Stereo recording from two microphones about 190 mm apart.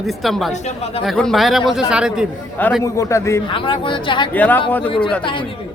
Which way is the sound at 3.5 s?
25° left (ahead or behind).